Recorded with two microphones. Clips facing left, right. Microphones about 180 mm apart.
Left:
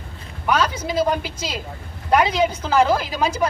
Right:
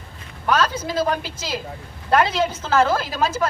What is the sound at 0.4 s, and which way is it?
A man's voice, 10° left (ahead or behind).